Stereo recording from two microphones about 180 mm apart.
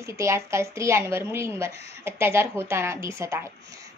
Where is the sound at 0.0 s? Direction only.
15° right (ahead or behind).